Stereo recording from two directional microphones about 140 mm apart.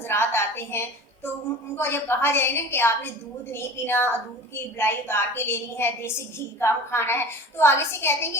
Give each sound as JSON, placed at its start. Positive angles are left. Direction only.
{"t": 0.1, "sound": "a woman's voice", "side_deg": 15}